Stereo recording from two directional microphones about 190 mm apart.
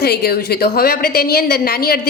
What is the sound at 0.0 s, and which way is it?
A woman's voice, 55° left (ahead or behind).